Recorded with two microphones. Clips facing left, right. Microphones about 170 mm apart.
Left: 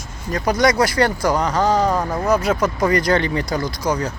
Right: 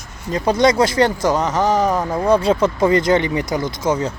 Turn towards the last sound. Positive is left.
turn(degrees=-25)  # may be behind; listen again after turning